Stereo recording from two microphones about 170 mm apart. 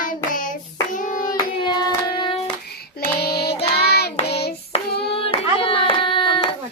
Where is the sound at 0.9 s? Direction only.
50° left (ahead or behind).